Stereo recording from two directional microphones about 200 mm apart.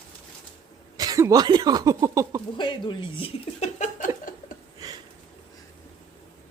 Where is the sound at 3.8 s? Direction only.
40° left (ahead or behind).